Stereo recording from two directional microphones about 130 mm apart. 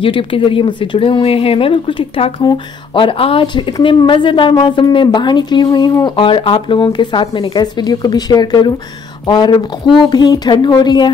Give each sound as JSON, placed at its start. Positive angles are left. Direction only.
{"t": 0.0, "sound": "a woman's voice", "side_deg": 40}